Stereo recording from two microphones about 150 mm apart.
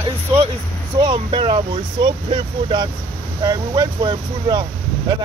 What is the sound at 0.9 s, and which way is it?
Speech, 35° right (ahead or behind).